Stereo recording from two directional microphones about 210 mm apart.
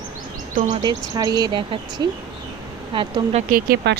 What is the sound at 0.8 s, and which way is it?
Speech, 20° right (ahead or behind).